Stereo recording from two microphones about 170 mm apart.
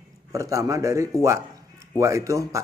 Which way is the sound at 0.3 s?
20° right (ahead or behind).